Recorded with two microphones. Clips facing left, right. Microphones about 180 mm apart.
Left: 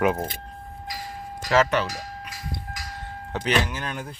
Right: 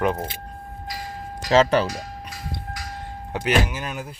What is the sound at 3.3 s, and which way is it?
Speech, 10° right (ahead or behind).